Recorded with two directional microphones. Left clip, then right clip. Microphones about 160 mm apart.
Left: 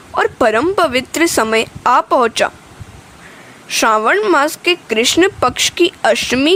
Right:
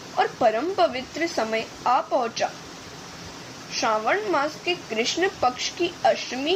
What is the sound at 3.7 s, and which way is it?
A woman's voice, 70° left (ahead or behind).